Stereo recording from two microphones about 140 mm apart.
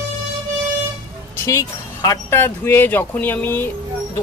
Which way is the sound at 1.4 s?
25° left (ahead or behind).